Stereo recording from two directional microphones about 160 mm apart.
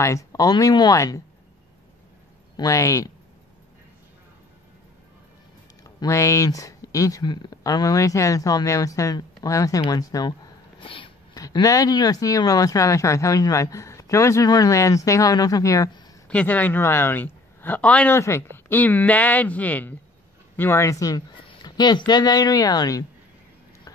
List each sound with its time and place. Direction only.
0.0 s speech: 20° left (ahead or behind)
2.5 s speech: 20° left (ahead or behind)
5.9 s speech: 20° left (ahead or behind)
10.8 s sneeze: 35° left (ahead or behind)
11.4 s speech: 20° left (ahead or behind)
16.3 s a man's voice: 10° left (ahead or behind)